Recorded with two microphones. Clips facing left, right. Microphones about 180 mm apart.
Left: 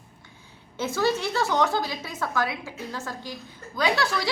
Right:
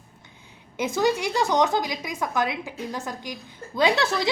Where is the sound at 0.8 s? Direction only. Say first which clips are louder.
Right 2 dB; 15° right (ahead or behind).